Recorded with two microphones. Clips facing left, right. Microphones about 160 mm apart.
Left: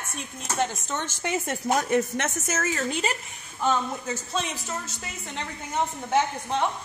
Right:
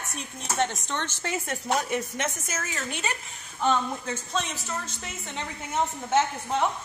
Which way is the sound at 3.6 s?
10° left (ahead or behind).